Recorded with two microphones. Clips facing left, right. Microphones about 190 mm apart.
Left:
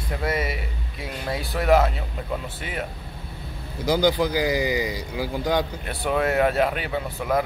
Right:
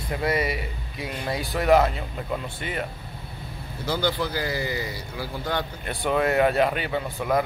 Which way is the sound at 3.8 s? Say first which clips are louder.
Left 5 dB; 15° left (ahead or behind).